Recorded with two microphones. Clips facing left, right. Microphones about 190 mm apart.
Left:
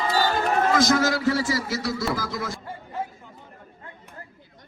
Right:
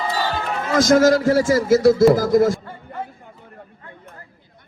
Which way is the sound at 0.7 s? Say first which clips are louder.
Right 12 dB; 50° right (ahead or behind).